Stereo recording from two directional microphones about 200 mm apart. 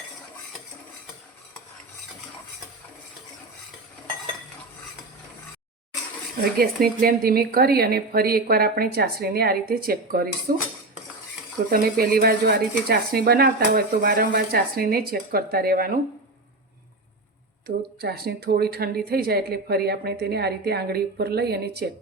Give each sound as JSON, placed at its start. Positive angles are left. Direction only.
{"t": 6.6, "sound": "speech", "side_deg": -50}
{"t": 11.7, "sound": "speech", "side_deg": -50}
{"t": 17.7, "sound": "speech", "side_deg": -50}